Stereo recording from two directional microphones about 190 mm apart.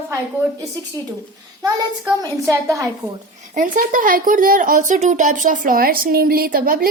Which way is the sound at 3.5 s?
45° right (ahead or behind).